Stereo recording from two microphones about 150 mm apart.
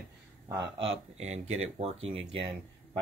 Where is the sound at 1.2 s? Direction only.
45° right (ahead or behind).